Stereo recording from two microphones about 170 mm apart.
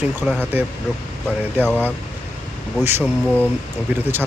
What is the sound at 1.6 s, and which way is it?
Speech, 10° left (ahead or behind).